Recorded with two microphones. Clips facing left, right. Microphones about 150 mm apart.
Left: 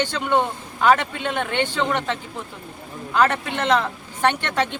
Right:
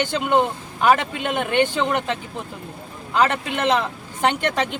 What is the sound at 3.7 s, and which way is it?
Speech, 20° right (ahead or behind).